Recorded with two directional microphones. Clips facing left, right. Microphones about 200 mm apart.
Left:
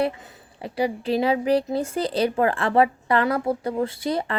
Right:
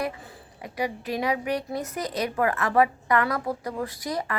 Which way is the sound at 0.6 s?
30° left (ahead or behind).